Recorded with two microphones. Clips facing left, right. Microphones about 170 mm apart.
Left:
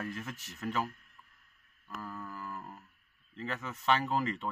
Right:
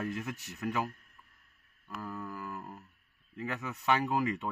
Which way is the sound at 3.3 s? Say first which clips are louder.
Right 1 dB; 15° right (ahead or behind).